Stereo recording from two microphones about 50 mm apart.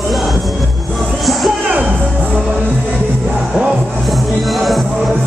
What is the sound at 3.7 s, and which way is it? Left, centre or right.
Music, centre.